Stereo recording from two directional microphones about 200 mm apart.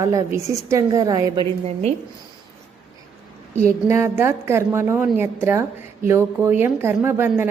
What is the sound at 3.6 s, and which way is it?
A woman's voice, 15° right (ahead or behind).